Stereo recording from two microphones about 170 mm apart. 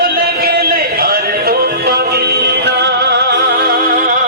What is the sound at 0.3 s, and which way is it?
Music, 65° right (ahead or behind).